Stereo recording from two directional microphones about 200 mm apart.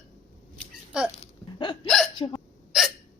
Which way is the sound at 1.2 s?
25° left (ahead or behind).